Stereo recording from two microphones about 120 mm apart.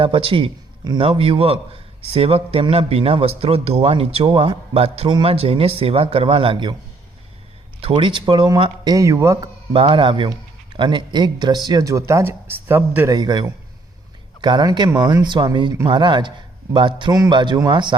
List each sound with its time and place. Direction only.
0.0 s a man's voice: 45° right (ahead or behind)
7.8 s a man's voice: 45° right (ahead or behind); by 9.5 s 25° right (ahead or behind)
9.7 s a man's voice: 40° right (ahead or behind); by 13.1 s 15° right (ahead or behind)
13.1 s a man's voice: 35° right (ahead or behind)